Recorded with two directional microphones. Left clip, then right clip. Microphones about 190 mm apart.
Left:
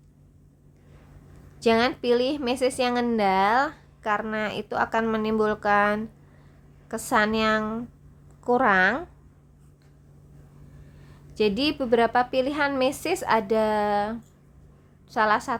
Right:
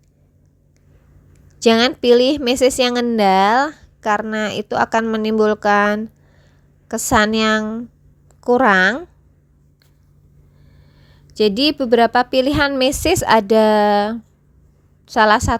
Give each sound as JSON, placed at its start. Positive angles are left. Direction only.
{"t": 1.5, "sound": "a woman's voice", "side_deg": -40}
{"t": 7.6, "sound": "speech", "side_deg": -25}
{"t": 11.3, "sound": "speech", "side_deg": -35}